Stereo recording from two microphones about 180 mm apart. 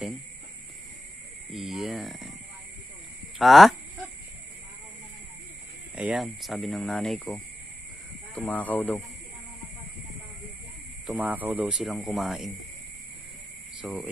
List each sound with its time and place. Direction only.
1.5 s speech: centre (ahead or behind)
3.3 s speech: centre (ahead or behind)
5.9 s speech: 5° right (ahead or behind)
11.1 s speech: 10° right (ahead or behind)
13.7 s speech: 5° right (ahead or behind)